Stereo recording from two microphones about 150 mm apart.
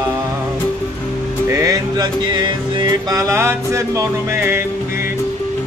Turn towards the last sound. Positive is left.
turn(degrees=-15)  # may be behind; listen again after turning